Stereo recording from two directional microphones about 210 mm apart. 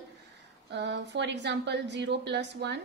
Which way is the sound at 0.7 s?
55° right (ahead or behind).